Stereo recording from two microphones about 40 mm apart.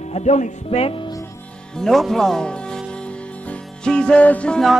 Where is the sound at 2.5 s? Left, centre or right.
Left.